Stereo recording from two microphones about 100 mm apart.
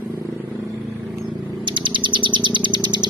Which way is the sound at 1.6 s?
55° right (ahead or behind).